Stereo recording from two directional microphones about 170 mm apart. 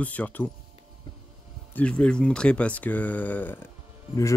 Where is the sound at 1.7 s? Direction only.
10° left (ahead or behind).